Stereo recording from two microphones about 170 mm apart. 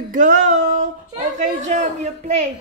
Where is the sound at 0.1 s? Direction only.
50° right (ahead or behind).